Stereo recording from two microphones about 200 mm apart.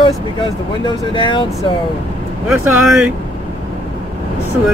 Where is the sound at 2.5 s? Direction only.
10° right (ahead or behind).